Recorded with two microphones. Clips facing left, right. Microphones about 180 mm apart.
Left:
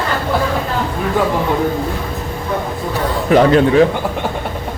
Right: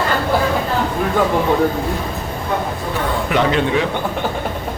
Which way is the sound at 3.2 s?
40° left (ahead or behind).